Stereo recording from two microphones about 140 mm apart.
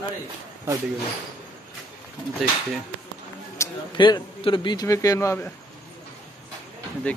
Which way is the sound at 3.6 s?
20° left (ahead or behind).